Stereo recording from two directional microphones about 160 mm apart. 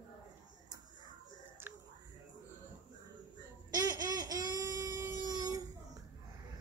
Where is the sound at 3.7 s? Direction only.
20° right (ahead or behind).